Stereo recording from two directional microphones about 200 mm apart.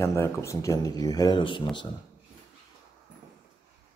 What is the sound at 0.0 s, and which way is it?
Speech, 15° left (ahead or behind).